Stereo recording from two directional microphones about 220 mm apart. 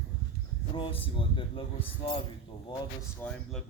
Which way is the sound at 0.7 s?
20° left (ahead or behind).